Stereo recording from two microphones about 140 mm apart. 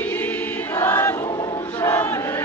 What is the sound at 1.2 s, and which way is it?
Choir, 30° left (ahead or behind).